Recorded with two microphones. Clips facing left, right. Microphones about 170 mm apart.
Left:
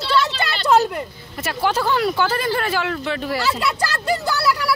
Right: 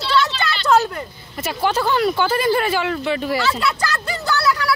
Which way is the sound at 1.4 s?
Centre (ahead or behind).